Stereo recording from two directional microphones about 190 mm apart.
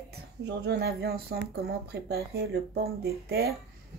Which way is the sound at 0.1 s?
60° right (ahead or behind).